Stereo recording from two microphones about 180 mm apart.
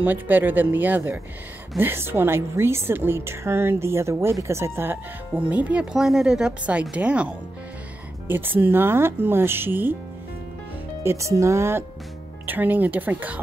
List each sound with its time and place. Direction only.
0.0 s a woman's voice: 10° right (ahead or behind)
11.1 s a woman's voice: 15° right (ahead or behind)